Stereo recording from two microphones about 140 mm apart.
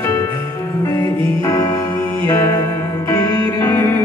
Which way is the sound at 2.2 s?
20° left (ahead or behind).